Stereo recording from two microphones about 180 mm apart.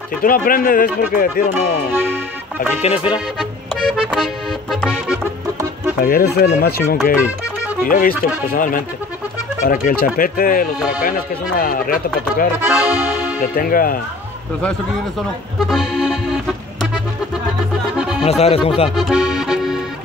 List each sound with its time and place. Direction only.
0.2 s speech: 50° left (ahead or behind)
1.5 s speech: 10° right (ahead or behind)
2.8 s music: 30° left (ahead or behind)
3.3 s music: centre (ahead or behind)
5.9 s speech: 55° left (ahead or behind)
7.2 s music: 10° right (ahead or behind)
7.8 s speech: 50° left (ahead or behind)
12.6 s accordion: 5° right (ahead or behind)
13.4 s speech: 50° left (ahead or behind)
15.7 s accordion: centre (ahead or behind)
17.9 s music: 5° right (ahead or behind)
18.2 s speech: 35° left (ahead or behind)
18.9 s accordion: 5° right (ahead or behind)